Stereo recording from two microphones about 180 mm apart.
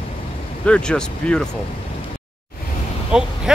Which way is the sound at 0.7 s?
5° left (ahead or behind).